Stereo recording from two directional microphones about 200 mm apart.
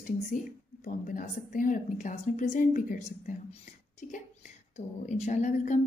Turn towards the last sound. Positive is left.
turn(degrees=35)  # may be behind; listen again after turning